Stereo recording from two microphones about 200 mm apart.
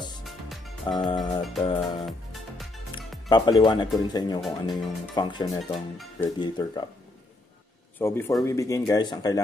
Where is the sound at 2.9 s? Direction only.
20° left (ahead or behind).